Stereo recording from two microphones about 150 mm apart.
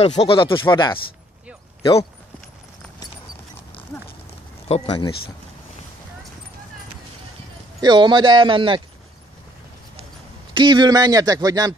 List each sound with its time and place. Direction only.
0.0 s speech: 40° left (ahead or behind)
4.6 s speech: 40° left (ahead or behind)
7.8 s speech: 30° right (ahead or behind)
10.5 s a man's voice: 30° right (ahead or behind)